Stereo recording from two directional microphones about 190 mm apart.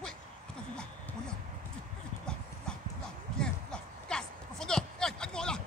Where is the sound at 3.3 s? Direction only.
5° left (ahead or behind).